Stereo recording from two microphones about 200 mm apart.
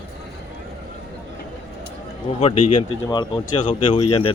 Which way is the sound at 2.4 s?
30° left (ahead or behind).